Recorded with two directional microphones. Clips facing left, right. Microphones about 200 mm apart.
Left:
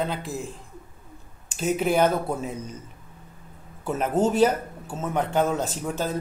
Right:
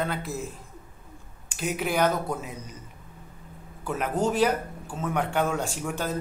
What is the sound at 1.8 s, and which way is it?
Speech, 25° left (ahead or behind).